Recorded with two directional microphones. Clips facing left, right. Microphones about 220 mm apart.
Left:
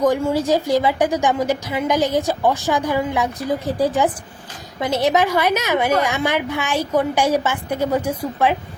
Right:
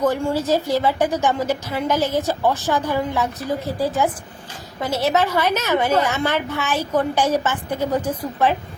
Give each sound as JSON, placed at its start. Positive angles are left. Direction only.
{"t": 0.0, "sound": "a woman's voice", "side_deg": 15}